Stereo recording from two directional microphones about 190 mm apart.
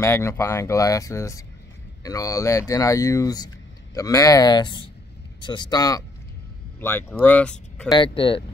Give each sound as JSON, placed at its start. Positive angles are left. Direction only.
{"t": 0.0, "sound": "speech", "side_deg": 15}
{"t": 7.9, "sound": "speech", "side_deg": 25}